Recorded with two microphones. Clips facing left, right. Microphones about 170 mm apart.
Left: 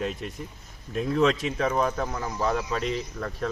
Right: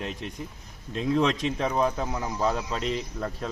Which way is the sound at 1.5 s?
20° right (ahead or behind).